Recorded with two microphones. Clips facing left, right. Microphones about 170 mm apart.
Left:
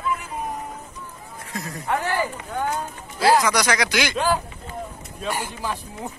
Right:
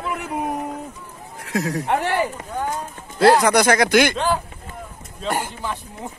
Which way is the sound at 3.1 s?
55° right (ahead or behind).